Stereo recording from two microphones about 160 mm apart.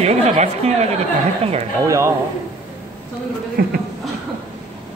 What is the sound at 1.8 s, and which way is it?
Speech, 20° right (ahead or behind).